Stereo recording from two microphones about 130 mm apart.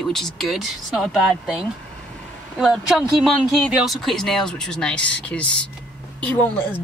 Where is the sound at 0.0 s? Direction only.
Centre (ahead or behind).